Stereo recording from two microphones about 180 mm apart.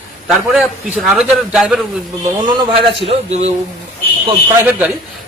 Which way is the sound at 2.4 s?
30° right (ahead or behind).